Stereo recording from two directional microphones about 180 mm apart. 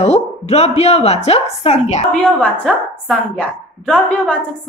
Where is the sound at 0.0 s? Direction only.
35° left (ahead or behind).